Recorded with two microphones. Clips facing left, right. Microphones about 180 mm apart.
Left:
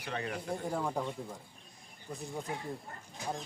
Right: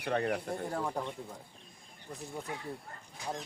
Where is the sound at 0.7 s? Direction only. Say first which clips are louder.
Left 2 dB; centre (ahead or behind).